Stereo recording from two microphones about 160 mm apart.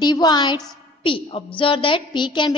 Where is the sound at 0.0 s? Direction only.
25° left (ahead or behind).